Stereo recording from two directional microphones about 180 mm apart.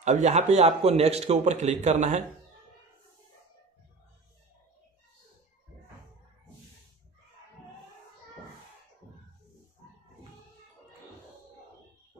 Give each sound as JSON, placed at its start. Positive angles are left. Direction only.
{"t": 0.0, "sound": "a man's voice", "side_deg": -40}